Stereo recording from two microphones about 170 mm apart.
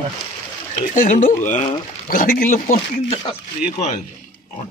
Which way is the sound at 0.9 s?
50° left (ahead or behind).